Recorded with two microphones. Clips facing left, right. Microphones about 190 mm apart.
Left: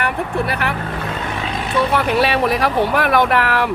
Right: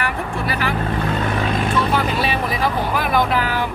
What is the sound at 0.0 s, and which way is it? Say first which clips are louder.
Vehicle: left 3 dB; 60° left (ahead or behind).